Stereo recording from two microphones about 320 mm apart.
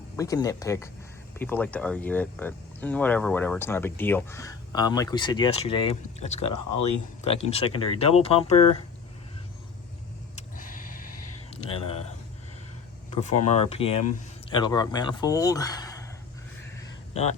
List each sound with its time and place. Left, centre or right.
0.2 s speech: centre
6.4 s speech: left
7.3 s speech: centre
11.5 s a sound: centre
13.1 s a sound: centre
13.5 s speech: centre